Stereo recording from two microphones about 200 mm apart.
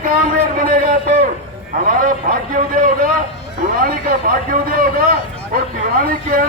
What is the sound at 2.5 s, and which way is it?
A man's voice, 45° right (ahead or behind).